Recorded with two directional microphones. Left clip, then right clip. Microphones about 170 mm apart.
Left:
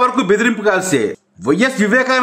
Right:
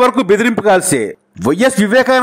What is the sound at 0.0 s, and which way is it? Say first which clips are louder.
A man's voice: right 3 dB; 40° right (ahead or behind).